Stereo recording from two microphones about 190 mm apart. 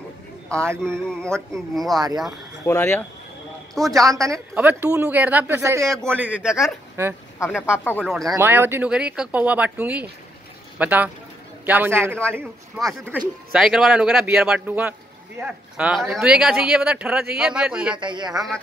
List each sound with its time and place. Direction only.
0.6 s speech: 15° right (ahead or behind)
1.2 s speech: 5° left (ahead or behind)
2.6 s speech: 15° left (ahead or behind)
3.8 s speech: 15° right (ahead or behind)
7.8 s speech: 10° left (ahead or behind)
8.1 s speech: centre (ahead or behind)
8.4 s speech: 10° right (ahead or behind)
17.9 s speech: 25° right (ahead or behind)